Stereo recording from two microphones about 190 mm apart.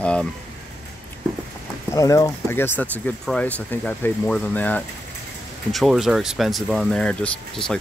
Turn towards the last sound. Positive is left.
turn(degrees=5)  # may be behind; listen again after turning